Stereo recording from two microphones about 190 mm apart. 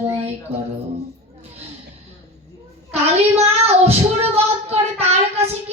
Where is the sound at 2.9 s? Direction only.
35° right (ahead or behind).